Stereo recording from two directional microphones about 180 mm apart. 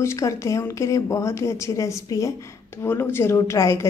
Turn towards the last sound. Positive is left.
turn(degrees=15)  # may be behind; listen again after turning